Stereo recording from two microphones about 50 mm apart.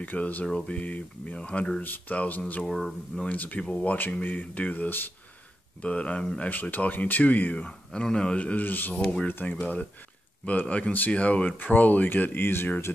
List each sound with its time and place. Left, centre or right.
0.0 s speech: left
0.5 s speech: centre; by 5.1 s left
5.8 s speech: left
6.5 s speech: left
7.5 s speech: centre
8.4 s speech: left